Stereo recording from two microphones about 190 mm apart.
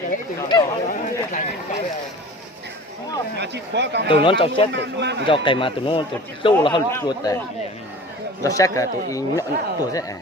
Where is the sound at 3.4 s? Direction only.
65° right (ahead or behind).